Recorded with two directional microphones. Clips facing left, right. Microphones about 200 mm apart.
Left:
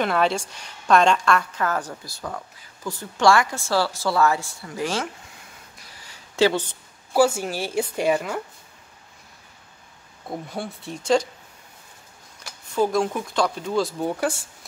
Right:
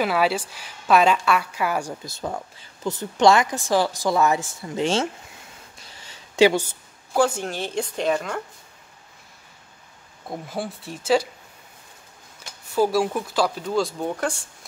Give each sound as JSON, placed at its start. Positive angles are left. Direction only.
{"t": 0.0, "sound": "a woman's voice", "side_deg": -5}
{"t": 6.0, "sound": "a sound", "side_deg": -15}
{"t": 7.2, "sound": "speech", "side_deg": 5}
{"t": 10.5, "sound": "speech", "side_deg": 0}
{"t": 12.4, "sound": "speech", "side_deg": -5}